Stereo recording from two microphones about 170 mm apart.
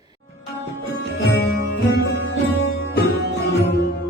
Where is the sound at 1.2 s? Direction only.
90° left.